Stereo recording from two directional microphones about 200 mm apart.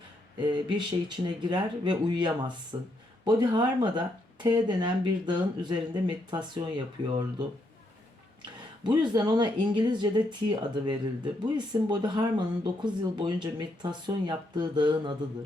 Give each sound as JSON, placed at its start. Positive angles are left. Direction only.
{"t": 0.3, "sound": "speech", "side_deg": -20}
{"t": 8.8, "sound": "speech", "side_deg": -20}